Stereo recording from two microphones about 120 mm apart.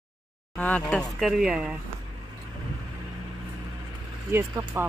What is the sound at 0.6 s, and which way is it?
Speech, 10° left (ahead or behind).